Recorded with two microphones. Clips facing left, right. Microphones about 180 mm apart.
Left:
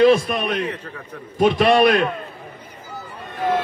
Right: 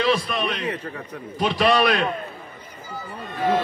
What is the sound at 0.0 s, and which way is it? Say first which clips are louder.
A man's voice: left 7 dB; 50° left (ahead or behind).